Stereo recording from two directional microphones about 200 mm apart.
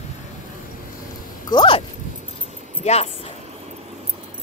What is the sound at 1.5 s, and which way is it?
Speech, 25° left (ahead or behind).